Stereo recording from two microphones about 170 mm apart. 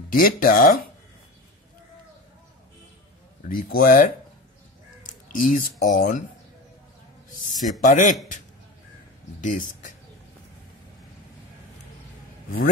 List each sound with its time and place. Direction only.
0.1 s speech: 55° left (ahead or behind)
3.4 s speech: 55° left (ahead or behind)
7.2 s a man's voice: 50° left (ahead or behind)
7.5 s a man's voice: centre (ahead or behind)
7.8 s a man's voice: 50° left (ahead or behind)
9.4 s speech: 50° left (ahead or behind)